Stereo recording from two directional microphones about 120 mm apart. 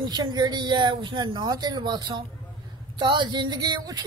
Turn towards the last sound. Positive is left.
turn(degrees=-35)  # may be behind; listen again after turning